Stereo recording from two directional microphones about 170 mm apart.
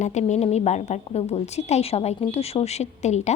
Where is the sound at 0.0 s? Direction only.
45° left (ahead or behind).